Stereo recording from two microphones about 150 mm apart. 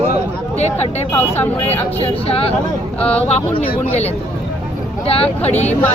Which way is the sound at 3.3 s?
40° left (ahead or behind).